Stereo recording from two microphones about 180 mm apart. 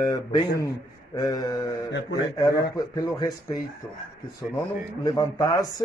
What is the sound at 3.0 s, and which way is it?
Speech, 20° left (ahead or behind).